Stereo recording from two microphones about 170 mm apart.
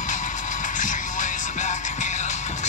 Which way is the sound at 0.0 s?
45° left (ahead or behind).